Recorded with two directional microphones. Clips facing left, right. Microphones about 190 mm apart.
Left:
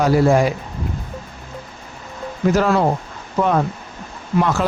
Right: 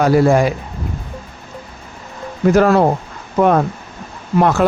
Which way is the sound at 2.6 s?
50° right (ahead or behind).